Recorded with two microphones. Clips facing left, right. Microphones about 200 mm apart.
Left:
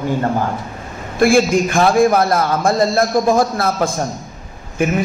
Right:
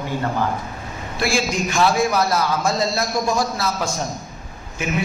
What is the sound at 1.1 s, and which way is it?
A man's voice, 55° left (ahead or behind).